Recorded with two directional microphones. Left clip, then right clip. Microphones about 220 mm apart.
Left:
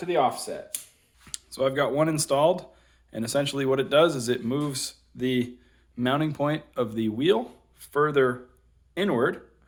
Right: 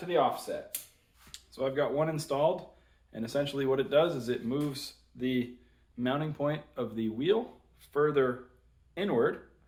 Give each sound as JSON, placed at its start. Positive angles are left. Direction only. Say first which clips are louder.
{"t": 0.1, "sound": "speech", "louder": "left 4 dB", "side_deg": 55}